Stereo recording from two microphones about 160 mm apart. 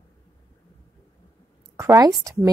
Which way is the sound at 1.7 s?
20° right (ahead or behind).